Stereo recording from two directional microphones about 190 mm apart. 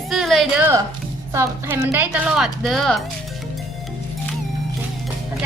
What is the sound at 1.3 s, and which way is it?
A woman's voice, 15° right (ahead or behind).